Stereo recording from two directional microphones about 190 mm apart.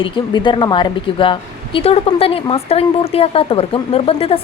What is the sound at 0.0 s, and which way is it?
Speech, 25° left (ahead or behind).